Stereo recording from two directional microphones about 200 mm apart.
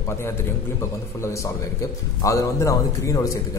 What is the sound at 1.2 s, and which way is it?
A man's voice, 15° left (ahead or behind).